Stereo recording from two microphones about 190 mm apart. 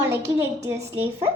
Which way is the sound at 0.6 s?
15° right (ahead or behind).